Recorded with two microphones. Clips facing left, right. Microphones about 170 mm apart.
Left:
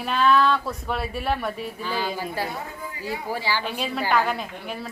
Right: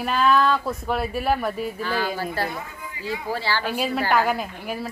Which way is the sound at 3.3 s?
15° left (ahead or behind).